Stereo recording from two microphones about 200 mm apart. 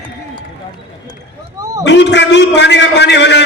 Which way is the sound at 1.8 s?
60° left (ahead or behind).